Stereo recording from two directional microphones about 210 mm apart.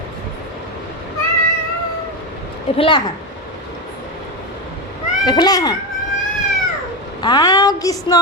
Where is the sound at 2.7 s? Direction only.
25° left (ahead or behind).